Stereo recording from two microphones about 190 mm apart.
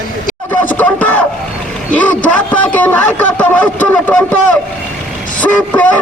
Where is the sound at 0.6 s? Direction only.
10° left (ahead or behind).